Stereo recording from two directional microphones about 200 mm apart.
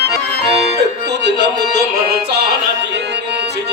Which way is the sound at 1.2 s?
60° right (ahead or behind).